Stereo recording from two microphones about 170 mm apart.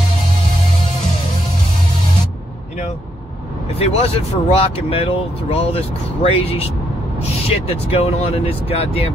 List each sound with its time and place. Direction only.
3.7 s speech: 35° left (ahead or behind)